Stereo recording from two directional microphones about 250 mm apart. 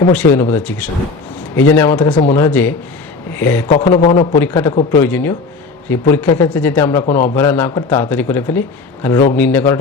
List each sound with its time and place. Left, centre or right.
0.1 s a man's voice: centre
4.4 s speech: centre